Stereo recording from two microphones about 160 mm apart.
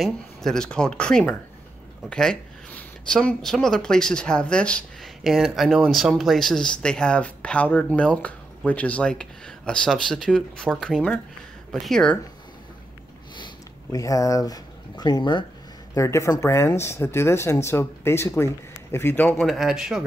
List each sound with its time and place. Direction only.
0.0 s speech: centre (ahead or behind)
13.9 s speech: 20° left (ahead or behind)
15.9 s speech: 20° left (ahead or behind); by 20.0 s 5° right (ahead or behind)